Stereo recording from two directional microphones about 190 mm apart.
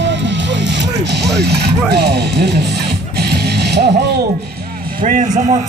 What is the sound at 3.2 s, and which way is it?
Music, 60° right (ahead or behind).